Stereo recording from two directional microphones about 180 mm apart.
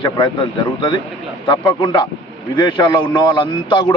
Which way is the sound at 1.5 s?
25° left (ahead or behind).